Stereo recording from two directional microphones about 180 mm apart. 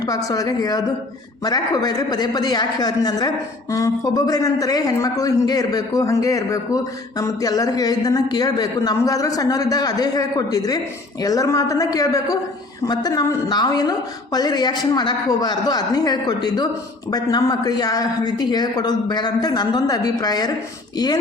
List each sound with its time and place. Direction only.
0.3 s a man's voice: 20° left (ahead or behind)